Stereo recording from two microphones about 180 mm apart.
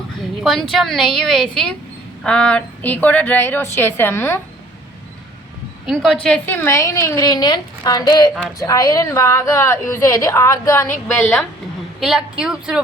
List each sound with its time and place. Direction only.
0.4 s a woman's voice: centre (ahead or behind)
5.8 s a woman's voice: centre (ahead or behind)
11.9 s a woman's voice: 5° right (ahead or behind)